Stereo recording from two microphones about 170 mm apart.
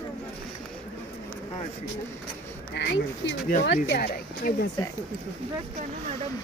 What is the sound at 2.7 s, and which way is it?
Speech, 90° left.